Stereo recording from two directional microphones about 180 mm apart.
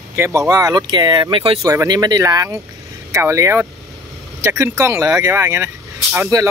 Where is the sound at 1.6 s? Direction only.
20° right (ahead or behind).